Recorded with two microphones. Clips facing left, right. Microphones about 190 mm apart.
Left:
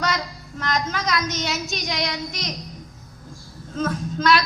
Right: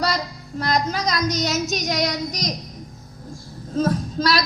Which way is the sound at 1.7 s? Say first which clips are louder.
Right 4 dB; 45° right (ahead or behind).